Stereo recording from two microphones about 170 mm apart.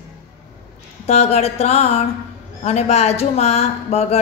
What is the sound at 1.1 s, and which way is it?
Speech, 40° left (ahead or behind).